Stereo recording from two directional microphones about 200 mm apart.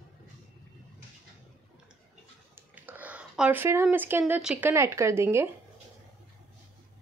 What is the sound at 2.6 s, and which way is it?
Speech, 10° right (ahead or behind).